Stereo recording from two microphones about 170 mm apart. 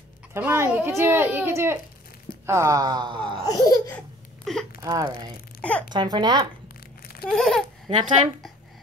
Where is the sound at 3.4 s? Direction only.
20° left (ahead or behind).